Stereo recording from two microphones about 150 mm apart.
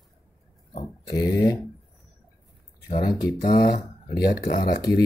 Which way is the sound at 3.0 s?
70° left (ahead or behind).